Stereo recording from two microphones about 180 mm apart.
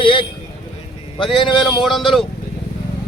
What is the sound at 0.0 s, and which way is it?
Speech, 30° left (ahead or behind).